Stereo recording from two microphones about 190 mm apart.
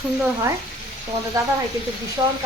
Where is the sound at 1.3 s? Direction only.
20° right (ahead or behind).